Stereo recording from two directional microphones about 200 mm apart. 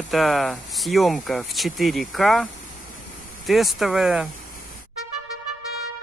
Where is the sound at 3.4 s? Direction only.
Centre (ahead or behind).